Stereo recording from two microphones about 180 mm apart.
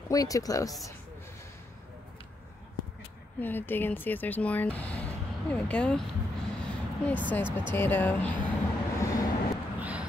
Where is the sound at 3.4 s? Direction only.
10° left (ahead or behind).